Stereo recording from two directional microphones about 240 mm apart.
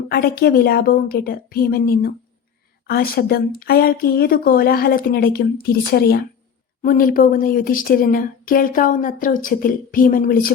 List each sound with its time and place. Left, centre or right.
0.1 s a woman's voice: left